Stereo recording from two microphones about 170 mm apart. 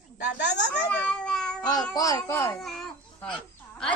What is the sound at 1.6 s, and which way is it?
Meow, 25° left (ahead or behind).